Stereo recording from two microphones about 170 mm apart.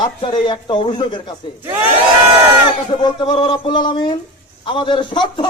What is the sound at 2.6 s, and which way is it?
A man's voice, 30° left (ahead or behind).